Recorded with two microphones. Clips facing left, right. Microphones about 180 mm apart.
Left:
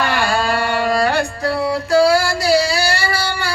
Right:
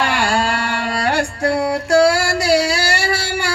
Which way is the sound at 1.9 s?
70° right (ahead or behind).